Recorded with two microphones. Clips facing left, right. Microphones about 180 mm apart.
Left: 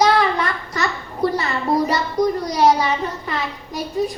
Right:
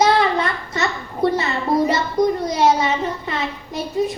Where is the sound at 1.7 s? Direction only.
Centre (ahead or behind).